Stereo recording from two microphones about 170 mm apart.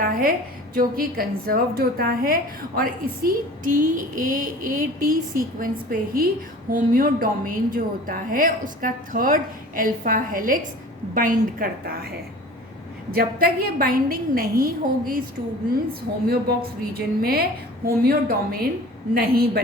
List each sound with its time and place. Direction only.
0.0 s a woman's voice: 60° right (ahead or behind)
16.3 s a woman's voice: 65° right (ahead or behind)